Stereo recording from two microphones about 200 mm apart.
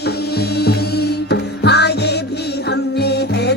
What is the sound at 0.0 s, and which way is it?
Music, 55° left (ahead or behind).